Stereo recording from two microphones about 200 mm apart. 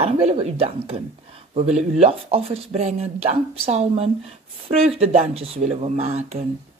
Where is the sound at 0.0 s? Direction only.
30° right (ahead or behind).